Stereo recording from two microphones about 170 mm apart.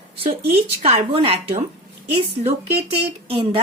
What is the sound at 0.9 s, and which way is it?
Speech, 35° right (ahead or behind).